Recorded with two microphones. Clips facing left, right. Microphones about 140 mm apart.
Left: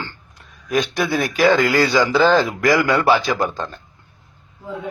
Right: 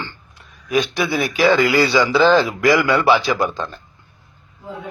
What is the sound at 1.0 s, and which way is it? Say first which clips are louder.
Speech: even; 45° left (ahead or behind).